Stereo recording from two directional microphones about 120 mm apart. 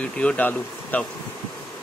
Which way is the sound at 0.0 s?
10° left (ahead or behind).